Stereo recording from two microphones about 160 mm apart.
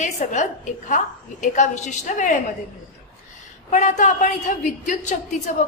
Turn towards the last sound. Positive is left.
turn(degrees=50)  # may be behind; listen again after turning